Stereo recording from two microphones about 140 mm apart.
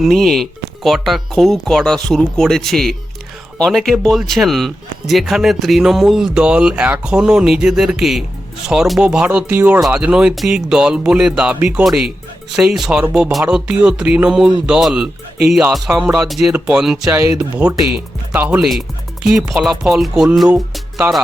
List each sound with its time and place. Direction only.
0.0 s speech: centre (ahead or behind)
17.1 s speech: 20° right (ahead or behind); by 20.8 s centre (ahead or behind)